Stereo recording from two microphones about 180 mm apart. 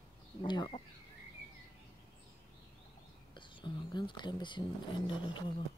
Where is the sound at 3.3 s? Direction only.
25° left (ahead or behind).